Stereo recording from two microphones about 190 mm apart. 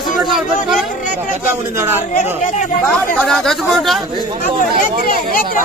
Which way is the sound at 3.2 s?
Centre (ahead or behind).